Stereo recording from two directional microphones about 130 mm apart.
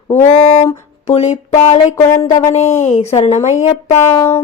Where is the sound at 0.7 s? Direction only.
50° left (ahead or behind).